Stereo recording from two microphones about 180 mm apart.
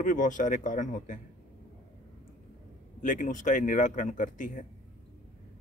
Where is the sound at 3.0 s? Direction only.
45° left (ahead or behind).